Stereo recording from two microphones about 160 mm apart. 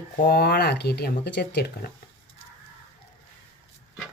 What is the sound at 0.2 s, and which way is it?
Speech, 70° left (ahead or behind).